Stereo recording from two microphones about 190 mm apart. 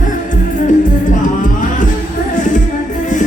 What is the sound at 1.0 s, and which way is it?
Music, 45° left (ahead or behind).